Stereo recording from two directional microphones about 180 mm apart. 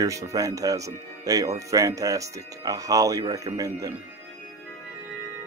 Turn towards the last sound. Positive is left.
turn(degrees=-20)  # may be behind; listen again after turning